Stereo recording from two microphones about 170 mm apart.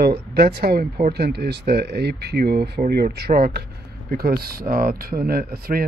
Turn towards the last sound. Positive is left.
turn(degrees=-65)  # may be behind; listen again after turning